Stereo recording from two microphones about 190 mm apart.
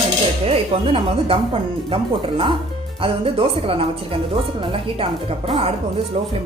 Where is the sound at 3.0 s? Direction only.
30° right (ahead or behind).